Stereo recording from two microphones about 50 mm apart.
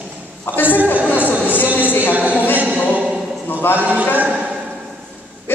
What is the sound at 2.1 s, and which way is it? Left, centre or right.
Speech, right.